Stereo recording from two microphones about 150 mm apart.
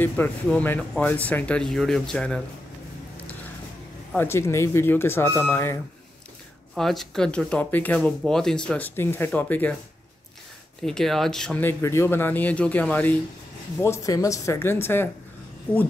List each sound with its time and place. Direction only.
0.0 s speech: 10° left (ahead or behind)
4.1 s speech: 15° left (ahead or behind)
6.7 s speech: centre (ahead or behind)
10.8 s speech: 5° left (ahead or behind)